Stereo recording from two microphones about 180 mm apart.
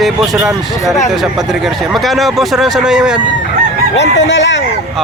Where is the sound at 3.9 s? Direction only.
80° left.